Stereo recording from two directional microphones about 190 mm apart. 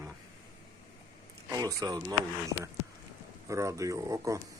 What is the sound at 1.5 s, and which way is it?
Speech, 20° right (ahead or behind).